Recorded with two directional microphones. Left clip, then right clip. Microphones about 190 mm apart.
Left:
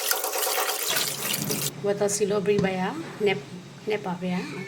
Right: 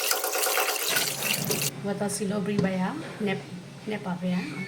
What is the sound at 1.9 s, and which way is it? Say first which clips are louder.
A woman's voice: left 9 dB; 45° left (ahead or behind).